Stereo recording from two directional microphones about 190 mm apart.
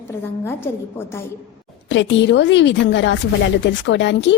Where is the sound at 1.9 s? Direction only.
75° left (ahead or behind).